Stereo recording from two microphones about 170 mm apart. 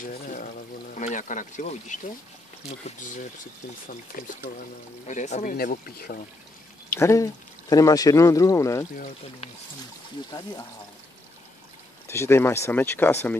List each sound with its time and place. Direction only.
0.0 s speech: 55° left (ahead or behind)
3.9 s speech: 55° left (ahead or behind)
5.0 s speech: 45° left (ahead or behind)
7.0 s speech: 15° left (ahead or behind)
12.1 s speech: 15° left (ahead or behind)